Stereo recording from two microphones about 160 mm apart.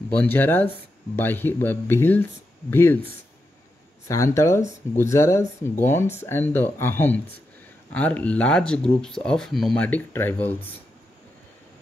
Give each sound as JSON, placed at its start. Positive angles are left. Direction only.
{"t": 0.1, "sound": "speech", "side_deg": 10}
{"t": 4.1, "sound": "speech", "side_deg": 20}